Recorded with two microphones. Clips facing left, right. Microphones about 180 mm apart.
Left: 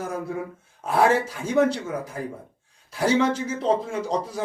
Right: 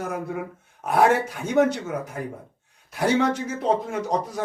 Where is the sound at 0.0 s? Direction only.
30° left (ahead or behind).